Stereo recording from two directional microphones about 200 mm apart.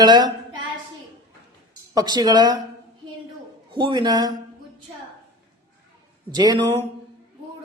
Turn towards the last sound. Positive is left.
turn(degrees=-20)  # may be behind; listen again after turning